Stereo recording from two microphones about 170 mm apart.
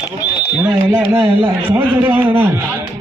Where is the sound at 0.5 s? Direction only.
10° right (ahead or behind).